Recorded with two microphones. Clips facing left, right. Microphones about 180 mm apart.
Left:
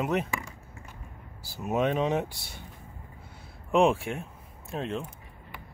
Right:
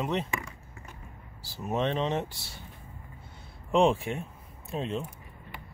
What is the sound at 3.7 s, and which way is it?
Speech, centre (ahead or behind).